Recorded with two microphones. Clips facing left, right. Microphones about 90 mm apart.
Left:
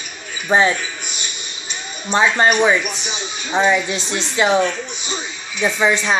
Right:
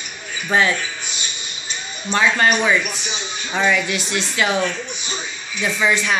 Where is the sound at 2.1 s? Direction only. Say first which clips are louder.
Left 2 dB; 25° left (ahead or behind).